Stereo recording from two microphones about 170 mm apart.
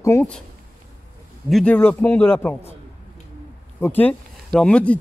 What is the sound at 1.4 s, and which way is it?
Speech, 5° left (ahead or behind).